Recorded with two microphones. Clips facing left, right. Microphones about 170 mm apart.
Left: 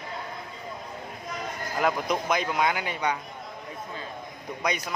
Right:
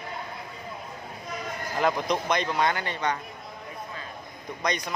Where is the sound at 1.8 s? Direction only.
5° left (ahead or behind).